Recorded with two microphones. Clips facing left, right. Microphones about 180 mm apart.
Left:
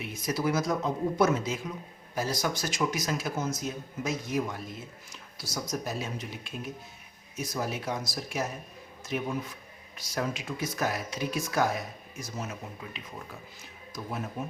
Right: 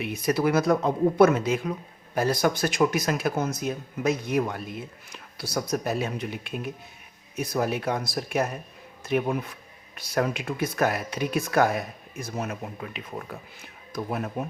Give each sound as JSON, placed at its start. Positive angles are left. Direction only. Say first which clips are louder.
{"t": 0.0, "sound": "speech", "louder": "right 6 dB", "side_deg": -65}